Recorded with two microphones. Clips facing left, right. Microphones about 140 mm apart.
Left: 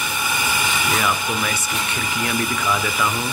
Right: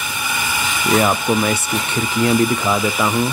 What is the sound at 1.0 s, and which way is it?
Speech, 35° right (ahead or behind).